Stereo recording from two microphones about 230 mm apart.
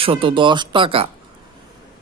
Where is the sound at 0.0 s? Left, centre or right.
Right.